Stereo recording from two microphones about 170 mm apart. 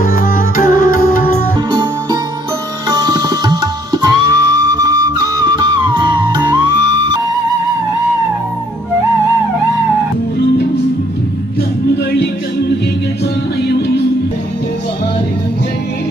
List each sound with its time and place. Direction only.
0.0 s music: 55° left (ahead or behind)
1.7 s music: 25° right (ahead or behind)
2.9 s tabla: 25° right (ahead or behind)
13.6 s music: 75° left (ahead or behind)